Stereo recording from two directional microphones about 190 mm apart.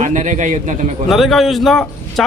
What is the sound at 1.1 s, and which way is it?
A man's voice, centre (ahead or behind).